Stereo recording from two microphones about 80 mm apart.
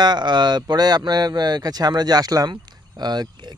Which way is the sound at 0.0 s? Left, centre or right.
Right.